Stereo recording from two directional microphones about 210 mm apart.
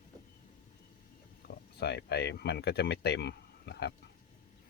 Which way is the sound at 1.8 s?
50° left (ahead or behind).